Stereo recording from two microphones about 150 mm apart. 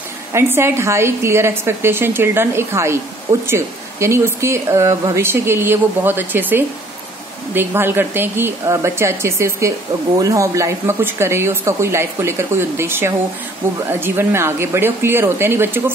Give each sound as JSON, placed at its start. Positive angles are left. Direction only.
{"t": 0.3, "sound": "speech", "side_deg": -15}